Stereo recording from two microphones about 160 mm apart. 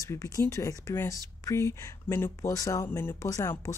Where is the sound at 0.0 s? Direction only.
20° left (ahead or behind).